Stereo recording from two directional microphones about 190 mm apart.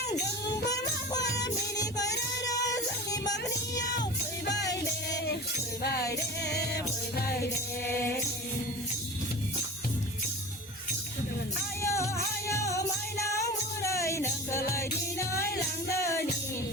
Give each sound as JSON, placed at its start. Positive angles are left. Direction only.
{"t": 0.7, "sound": "music", "side_deg": 20}
{"t": 1.7, "sound": "child singing", "side_deg": 20}
{"t": 4.4, "sound": "music", "side_deg": 65}
{"t": 11.8, "sound": "music", "side_deg": 15}